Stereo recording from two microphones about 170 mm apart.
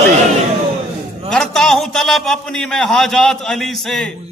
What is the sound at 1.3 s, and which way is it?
A man's voice, 5° left (ahead or behind).